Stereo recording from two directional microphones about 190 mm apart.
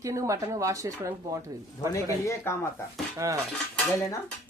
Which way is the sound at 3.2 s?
15° right (ahead or behind).